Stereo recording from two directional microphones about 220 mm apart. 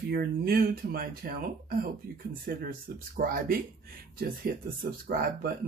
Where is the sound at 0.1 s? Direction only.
45° right (ahead or behind).